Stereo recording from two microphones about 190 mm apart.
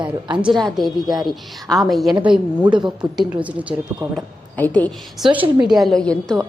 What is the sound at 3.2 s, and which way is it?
Speech, 5° right (ahead or behind).